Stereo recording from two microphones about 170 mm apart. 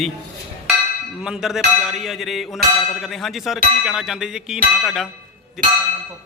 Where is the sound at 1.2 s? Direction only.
5° right (ahead or behind).